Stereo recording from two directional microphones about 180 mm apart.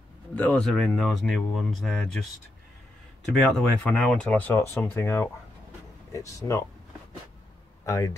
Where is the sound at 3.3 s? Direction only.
Centre (ahead or behind).